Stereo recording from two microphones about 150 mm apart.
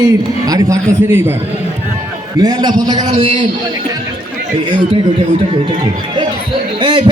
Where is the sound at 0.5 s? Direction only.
20° right (ahead or behind).